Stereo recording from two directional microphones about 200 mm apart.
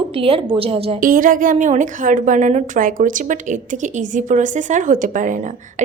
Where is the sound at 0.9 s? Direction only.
40° right (ahead or behind).